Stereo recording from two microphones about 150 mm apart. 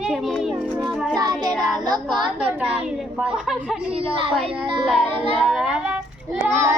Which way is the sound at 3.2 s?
Centre (ahead or behind).